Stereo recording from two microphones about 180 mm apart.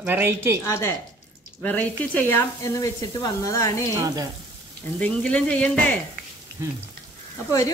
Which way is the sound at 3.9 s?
20° right (ahead or behind).